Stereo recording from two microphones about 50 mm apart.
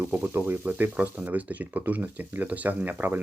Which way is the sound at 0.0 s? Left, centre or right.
Right.